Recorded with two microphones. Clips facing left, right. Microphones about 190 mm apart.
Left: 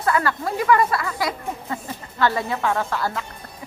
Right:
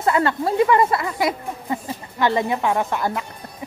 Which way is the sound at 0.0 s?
25° right (ahead or behind).